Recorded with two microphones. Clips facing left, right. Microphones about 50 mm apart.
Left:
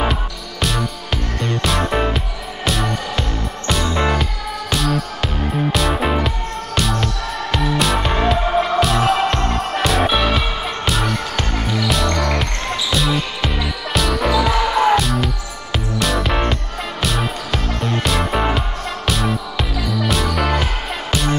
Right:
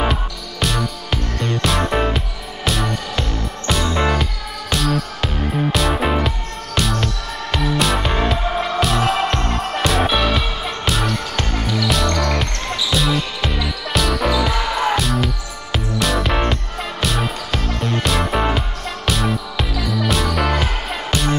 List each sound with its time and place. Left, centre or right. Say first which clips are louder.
0.0 s music: even; centre